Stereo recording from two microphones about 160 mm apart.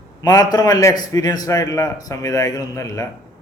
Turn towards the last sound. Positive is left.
turn(degrees=20)  # may be behind; listen again after turning